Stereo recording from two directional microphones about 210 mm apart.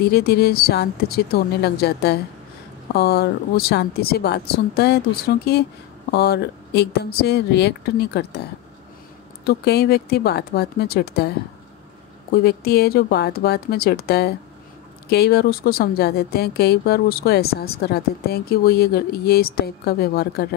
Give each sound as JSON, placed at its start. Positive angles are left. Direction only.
{"t": 0.0, "sound": "speech", "side_deg": 50}
{"t": 9.5, "sound": "speech", "side_deg": 50}
{"t": 12.3, "sound": "speech", "side_deg": 45}